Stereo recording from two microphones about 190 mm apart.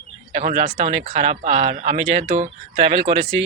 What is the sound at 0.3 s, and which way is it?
Speech, 30° right (ahead or behind).